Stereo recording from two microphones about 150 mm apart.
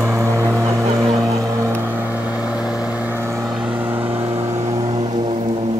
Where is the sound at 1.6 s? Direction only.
15° right (ahead or behind).